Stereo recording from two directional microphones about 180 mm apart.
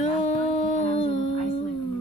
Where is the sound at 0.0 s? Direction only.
35° left (ahead or behind).